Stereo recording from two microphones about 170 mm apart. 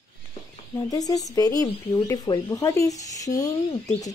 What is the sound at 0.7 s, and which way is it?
Speech, 20° left (ahead or behind).